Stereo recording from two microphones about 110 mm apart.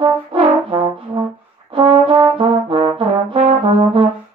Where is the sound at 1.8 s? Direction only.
50° right (ahead or behind).